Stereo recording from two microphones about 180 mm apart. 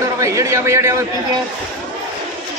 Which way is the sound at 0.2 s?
15° right (ahead or behind).